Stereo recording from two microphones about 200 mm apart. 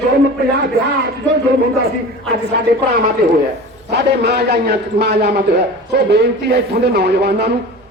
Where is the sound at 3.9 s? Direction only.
55° right (ahead or behind).